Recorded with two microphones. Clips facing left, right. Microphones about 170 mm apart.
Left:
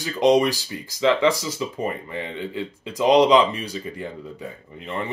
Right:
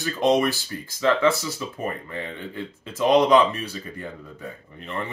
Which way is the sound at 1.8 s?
15° left (ahead or behind).